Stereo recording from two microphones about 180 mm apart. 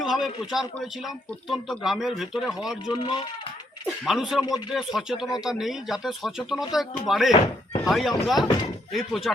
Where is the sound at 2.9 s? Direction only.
25° left (ahead or behind).